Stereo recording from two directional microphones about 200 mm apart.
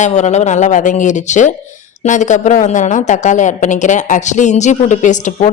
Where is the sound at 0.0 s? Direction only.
35° left (ahead or behind).